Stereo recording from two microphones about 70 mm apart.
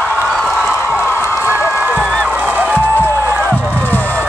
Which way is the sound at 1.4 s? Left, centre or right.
Right.